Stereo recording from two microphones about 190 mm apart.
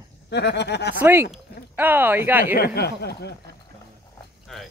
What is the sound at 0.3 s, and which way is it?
Speech, 60° left (ahead or behind).